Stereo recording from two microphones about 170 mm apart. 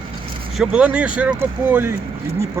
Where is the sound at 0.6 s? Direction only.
5° right (ahead or behind).